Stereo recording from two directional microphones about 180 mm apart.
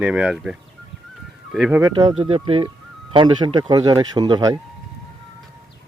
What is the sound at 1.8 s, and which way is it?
Speech, 25° right (ahead or behind).